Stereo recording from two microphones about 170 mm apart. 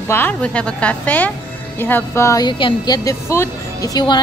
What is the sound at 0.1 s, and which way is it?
A woman's voice, 10° left (ahead or behind).